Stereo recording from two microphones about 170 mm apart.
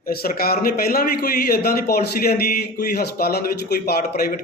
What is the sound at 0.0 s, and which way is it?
A man's voice, 60° left (ahead or behind).